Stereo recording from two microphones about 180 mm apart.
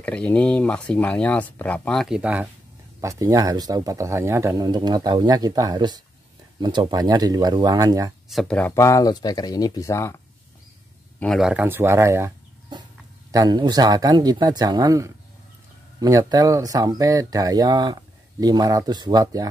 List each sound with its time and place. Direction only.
0.0 s speech: 5° left (ahead or behind)
3.0 s speech: 15° right (ahead or behind)
8.3 s speech: 5° left (ahead or behind)
11.1 s speech: centre (ahead or behind); by 12.3 s 15° right (ahead or behind)
13.3 s speech: 20° right (ahead or behind)